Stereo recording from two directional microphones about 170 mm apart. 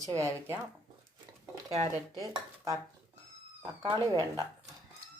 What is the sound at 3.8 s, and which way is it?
Speech, 20° right (ahead or behind).